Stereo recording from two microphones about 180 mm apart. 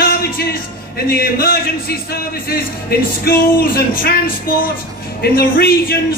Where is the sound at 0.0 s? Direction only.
55° left (ahead or behind).